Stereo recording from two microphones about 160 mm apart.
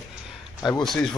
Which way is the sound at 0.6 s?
25° left (ahead or behind).